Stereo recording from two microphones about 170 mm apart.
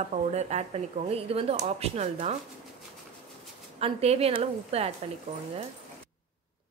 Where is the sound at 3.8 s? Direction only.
35° right (ahead or behind).